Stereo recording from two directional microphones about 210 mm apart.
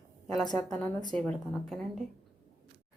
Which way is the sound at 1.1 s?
5° left (ahead or behind).